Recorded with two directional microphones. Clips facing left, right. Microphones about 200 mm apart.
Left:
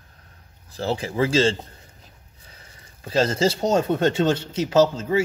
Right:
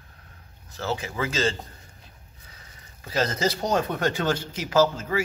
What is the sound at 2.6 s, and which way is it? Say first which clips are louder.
Speech: left 5 dB; 30° left (ahead or behind).